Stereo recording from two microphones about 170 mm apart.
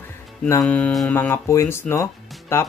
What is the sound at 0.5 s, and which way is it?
Speech, 10° left (ahead or behind).